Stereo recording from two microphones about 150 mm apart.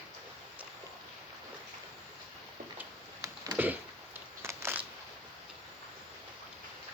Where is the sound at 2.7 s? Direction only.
20° right (ahead or behind).